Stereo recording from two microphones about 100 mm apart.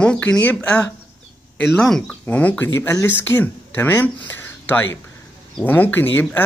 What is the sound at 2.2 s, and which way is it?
Speech, 15° left (ahead or behind).